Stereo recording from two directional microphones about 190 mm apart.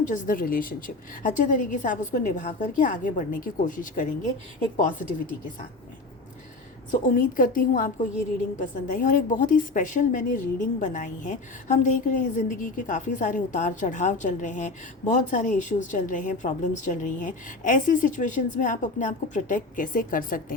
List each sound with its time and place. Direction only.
0.1 s a woman's voice: 45° left (ahead or behind)
6.9 s a woman's voice: 45° left (ahead or behind)